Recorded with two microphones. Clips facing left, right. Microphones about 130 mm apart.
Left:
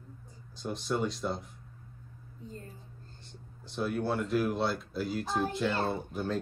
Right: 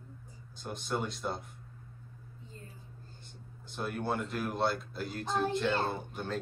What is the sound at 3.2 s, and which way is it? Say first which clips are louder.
Speech: left 1 dB; centre (ahead or behind).